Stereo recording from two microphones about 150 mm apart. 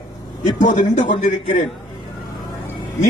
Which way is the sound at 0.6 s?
55° left (ahead or behind).